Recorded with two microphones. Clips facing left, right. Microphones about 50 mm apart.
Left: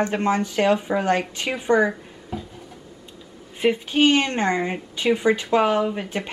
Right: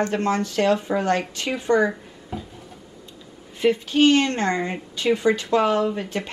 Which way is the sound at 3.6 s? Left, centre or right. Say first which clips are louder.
Right 1 dB; centre.